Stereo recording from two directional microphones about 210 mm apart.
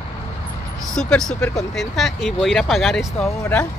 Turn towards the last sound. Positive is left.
turn(degrees=5)  # may be behind; listen again after turning